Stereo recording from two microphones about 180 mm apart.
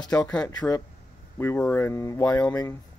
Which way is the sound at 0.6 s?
20° left (ahead or behind).